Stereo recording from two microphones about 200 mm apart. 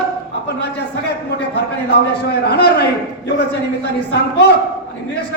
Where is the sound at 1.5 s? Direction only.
55° left (ahead or behind).